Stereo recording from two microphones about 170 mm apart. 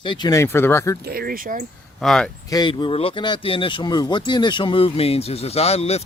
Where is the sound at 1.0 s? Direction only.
65° right (ahead or behind).